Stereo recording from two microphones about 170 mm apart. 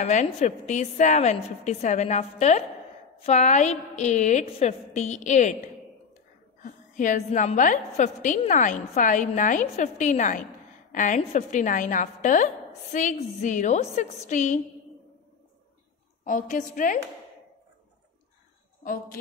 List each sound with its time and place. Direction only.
0.0 s a woman's voice: 45° left (ahead or behind)
6.6 s a woman's voice: 50° left (ahead or behind)
16.3 s a woman's voice: 50° left (ahead or behind)